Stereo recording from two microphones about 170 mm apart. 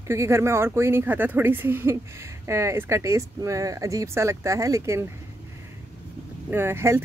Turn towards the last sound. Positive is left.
turn(degrees=-15)  # may be behind; listen again after turning